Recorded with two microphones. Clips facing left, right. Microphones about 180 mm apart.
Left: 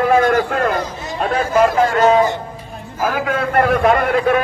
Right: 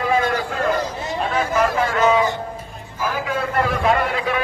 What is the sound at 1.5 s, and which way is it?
Speech, 40° left (ahead or behind).